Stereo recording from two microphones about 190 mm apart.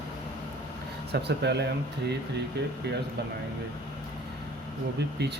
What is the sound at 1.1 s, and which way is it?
Speech, 60° right (ahead or behind).